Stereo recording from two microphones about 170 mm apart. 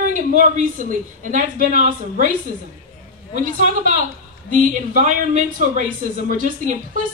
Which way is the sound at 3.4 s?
50° right (ahead or behind).